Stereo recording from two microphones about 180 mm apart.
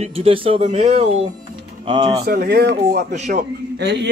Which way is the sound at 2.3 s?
60° right (ahead or behind).